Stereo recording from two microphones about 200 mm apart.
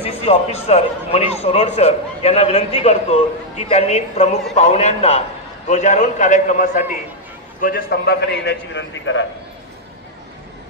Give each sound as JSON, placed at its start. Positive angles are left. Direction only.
{"t": 0.0, "sound": "a man's voice", "side_deg": 30}